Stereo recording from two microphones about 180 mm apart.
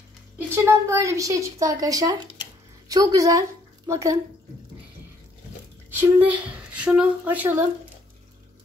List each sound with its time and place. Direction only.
0.7 s a woman's voice: 15° right (ahead or behind)
5.9 s speech: 10° right (ahead or behind)